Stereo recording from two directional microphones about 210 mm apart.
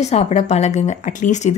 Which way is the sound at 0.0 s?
30° left (ahead or behind).